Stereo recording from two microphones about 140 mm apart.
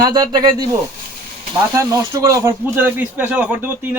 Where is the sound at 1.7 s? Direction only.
25° right (ahead or behind).